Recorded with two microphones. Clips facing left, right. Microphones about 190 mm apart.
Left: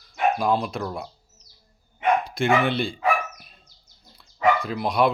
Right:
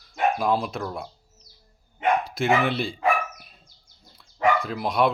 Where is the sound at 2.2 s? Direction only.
5° right (ahead or behind).